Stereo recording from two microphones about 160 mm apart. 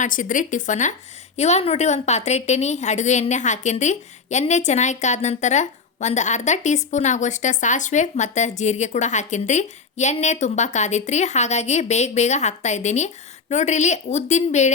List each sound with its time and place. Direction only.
0.0 s a woman's voice: 55° left (ahead or behind)